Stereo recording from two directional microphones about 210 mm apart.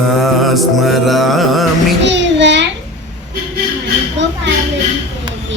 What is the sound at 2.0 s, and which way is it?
Child singing, 55° right (ahead or behind).